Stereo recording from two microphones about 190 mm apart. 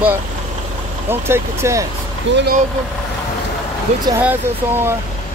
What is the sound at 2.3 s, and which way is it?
Speech, 75° right (ahead or behind).